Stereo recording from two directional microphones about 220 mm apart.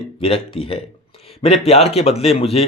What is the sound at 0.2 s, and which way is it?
A man's voice, 25° left (ahead or behind).